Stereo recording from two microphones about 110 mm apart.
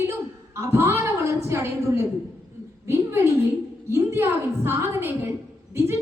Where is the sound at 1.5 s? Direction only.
25° right (ahead or behind).